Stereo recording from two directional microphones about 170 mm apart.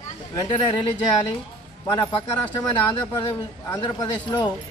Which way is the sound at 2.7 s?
30° left (ahead or behind).